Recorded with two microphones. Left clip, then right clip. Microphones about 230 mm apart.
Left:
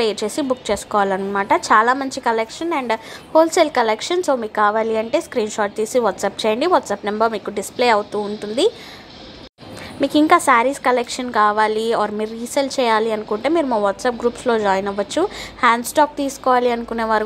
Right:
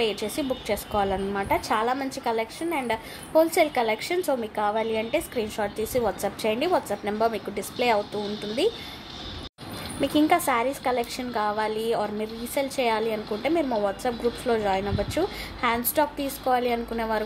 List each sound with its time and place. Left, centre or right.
0.0 s a woman's voice: centre
9.9 s a woman's voice: centre